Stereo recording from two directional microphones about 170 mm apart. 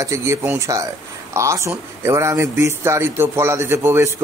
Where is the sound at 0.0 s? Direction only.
15° right (ahead or behind).